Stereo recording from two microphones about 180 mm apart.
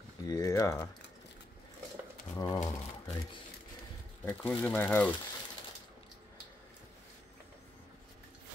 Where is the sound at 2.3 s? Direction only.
20° left (ahead or behind).